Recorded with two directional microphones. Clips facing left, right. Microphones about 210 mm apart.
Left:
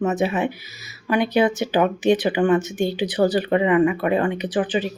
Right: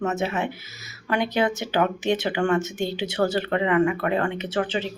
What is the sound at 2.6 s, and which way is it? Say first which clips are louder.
Speech: left 4 dB; 20° right (ahead or behind).